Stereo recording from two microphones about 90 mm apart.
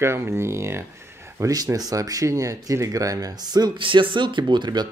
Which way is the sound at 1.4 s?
40° right (ahead or behind).